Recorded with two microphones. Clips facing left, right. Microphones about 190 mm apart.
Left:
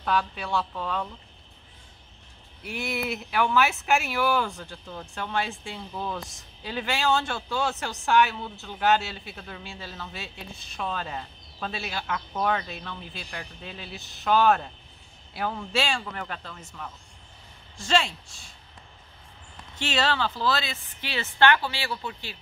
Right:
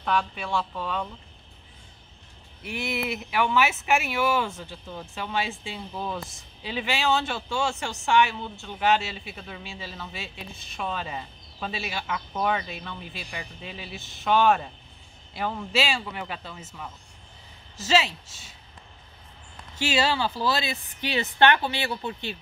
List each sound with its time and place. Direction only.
0.0 s speech: centre (ahead or behind)
2.6 s speech: centre (ahead or behind)
19.8 s a woman's voice: 10° right (ahead or behind)